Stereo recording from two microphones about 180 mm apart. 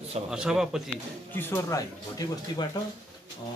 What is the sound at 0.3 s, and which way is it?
Speech, 5° right (ahead or behind).